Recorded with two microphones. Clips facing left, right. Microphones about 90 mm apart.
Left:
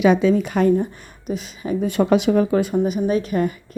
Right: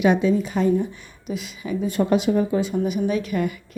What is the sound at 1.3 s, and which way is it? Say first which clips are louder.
Speech: left 3 dB; 40° left (ahead or behind).